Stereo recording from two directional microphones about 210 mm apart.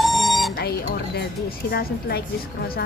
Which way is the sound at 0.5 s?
50° left (ahead or behind).